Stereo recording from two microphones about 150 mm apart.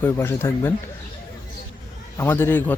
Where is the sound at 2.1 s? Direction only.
15° left (ahead or behind).